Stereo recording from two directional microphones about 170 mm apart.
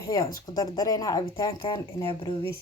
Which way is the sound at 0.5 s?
20° left (ahead or behind).